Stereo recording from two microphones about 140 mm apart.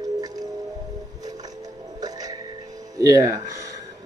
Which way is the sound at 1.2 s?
25° right (ahead or behind).